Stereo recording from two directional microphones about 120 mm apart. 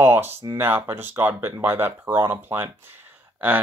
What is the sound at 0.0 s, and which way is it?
Speech, 20° right (ahead or behind).